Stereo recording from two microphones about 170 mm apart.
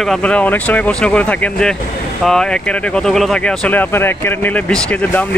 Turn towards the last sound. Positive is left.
turn(degrees=5)  # may be behind; listen again after turning